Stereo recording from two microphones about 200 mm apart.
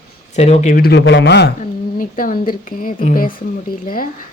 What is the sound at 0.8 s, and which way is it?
Speech, 60° left (ahead or behind).